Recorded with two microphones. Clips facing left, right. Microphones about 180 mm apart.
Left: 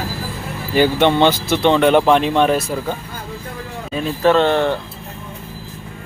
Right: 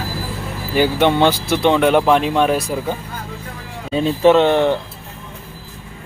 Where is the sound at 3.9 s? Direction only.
25° right (ahead or behind).